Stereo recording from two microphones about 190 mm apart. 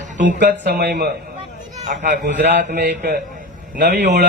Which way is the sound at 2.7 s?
60° right (ahead or behind).